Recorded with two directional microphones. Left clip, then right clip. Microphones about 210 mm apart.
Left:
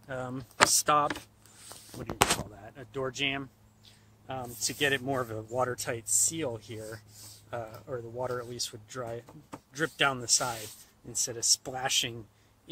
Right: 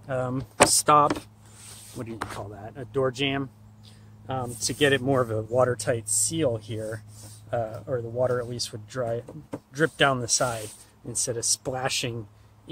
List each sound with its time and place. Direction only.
0.1 s speech: 15° left (ahead or behind)
2.5 s speech: 20° left (ahead or behind)